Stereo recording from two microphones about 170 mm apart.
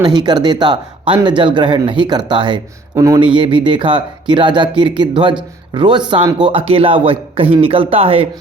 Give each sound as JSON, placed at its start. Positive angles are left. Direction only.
{"t": 0.0, "sound": "speech", "side_deg": -25}